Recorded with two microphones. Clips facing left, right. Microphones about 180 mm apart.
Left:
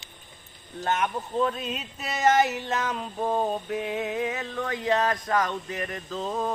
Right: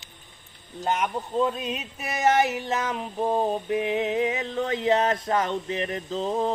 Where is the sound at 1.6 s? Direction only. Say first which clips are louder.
Right 2 dB; 10° right (ahead or behind).